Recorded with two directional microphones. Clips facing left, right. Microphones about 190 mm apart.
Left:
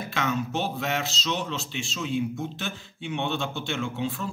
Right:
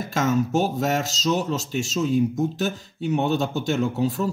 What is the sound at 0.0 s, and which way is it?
Speech, 40° right (ahead or behind).